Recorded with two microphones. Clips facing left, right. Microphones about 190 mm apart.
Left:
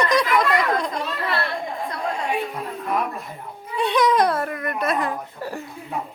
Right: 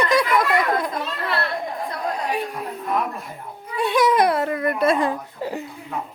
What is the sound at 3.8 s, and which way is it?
A woman's voice, 5° right (ahead or behind).